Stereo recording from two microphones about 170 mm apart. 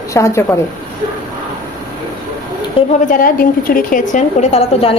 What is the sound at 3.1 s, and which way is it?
A woman's voice, 55° left (ahead or behind).